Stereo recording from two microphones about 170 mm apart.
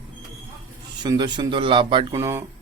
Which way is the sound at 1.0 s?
25° right (ahead or behind).